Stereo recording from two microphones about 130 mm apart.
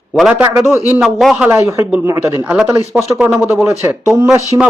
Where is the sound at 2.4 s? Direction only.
5° right (ahead or behind).